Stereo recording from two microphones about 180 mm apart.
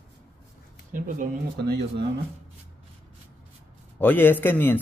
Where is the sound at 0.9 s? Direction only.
50° right (ahead or behind); by 2.0 s 65° right (ahead or behind).